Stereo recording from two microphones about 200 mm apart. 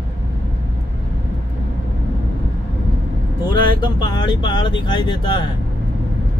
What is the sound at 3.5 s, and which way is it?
Speech, 20° left (ahead or behind).